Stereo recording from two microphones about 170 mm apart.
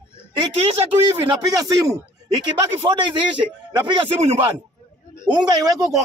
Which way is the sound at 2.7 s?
30° right (ahead or behind).